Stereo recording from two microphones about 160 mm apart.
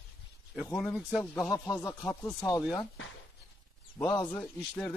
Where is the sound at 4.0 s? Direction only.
10° left (ahead or behind).